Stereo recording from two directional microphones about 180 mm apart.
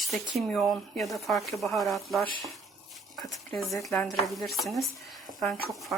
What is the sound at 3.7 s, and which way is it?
Speech, centre (ahead or behind).